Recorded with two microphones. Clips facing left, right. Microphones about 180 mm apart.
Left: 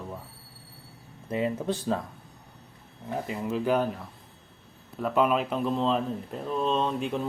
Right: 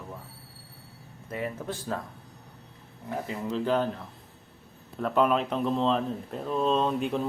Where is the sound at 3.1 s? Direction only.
15° left (ahead or behind).